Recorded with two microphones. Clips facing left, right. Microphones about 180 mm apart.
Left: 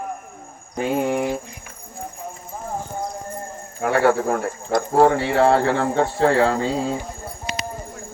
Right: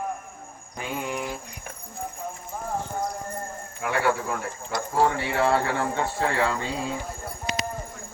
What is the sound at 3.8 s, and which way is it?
Speech, 50° left (ahead or behind).